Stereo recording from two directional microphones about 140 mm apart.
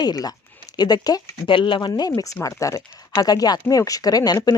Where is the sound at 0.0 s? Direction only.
30° left (ahead or behind).